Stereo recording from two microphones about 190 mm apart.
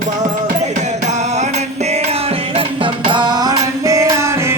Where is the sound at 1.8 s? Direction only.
35° right (ahead or behind).